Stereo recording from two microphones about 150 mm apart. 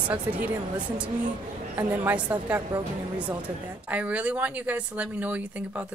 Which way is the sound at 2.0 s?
10° right (ahead or behind).